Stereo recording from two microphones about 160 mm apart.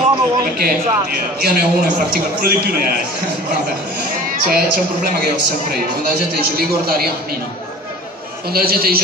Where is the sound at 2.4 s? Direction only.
70° right (ahead or behind).